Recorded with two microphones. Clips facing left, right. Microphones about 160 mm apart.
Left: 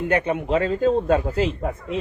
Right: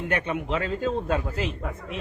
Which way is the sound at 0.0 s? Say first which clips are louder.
Left 6 dB; 30° left (ahead or behind).